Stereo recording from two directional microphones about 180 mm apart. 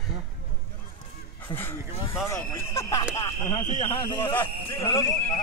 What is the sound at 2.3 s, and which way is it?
A man's voice, 15° left (ahead or behind).